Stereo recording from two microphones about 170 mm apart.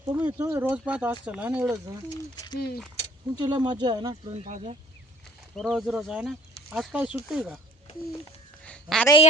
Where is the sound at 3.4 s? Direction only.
25° right (ahead or behind).